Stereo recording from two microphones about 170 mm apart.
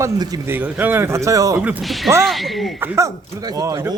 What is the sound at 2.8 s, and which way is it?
Speech, 15° right (ahead or behind).